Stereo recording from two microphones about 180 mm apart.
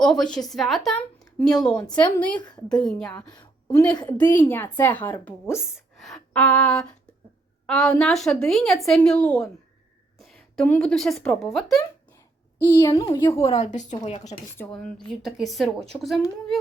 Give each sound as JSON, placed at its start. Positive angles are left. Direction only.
{"t": 0.0, "sound": "speech", "side_deg": 5}
{"t": 2.5, "sound": "a woman's voice", "side_deg": 25}
{"t": 2.8, "sound": "speech", "side_deg": 5}
{"t": 3.9, "sound": "speech", "side_deg": 20}
{"t": 5.5, "sound": "a woman's voice", "side_deg": 0}
{"t": 12.6, "sound": "a woman's voice", "side_deg": 20}
{"t": 14.6, "sound": "speech", "side_deg": 5}